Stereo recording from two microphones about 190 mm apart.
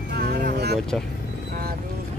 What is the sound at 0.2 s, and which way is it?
Vehicle, 55° right (ahead or behind).